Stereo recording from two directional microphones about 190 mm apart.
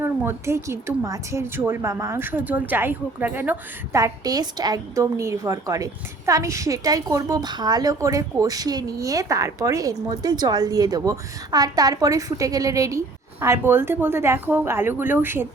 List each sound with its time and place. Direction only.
0.0 s a woman's voice: 10° right (ahead or behind)